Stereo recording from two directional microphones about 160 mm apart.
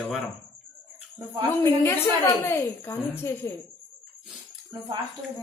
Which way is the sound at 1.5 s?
15° left (ahead or behind).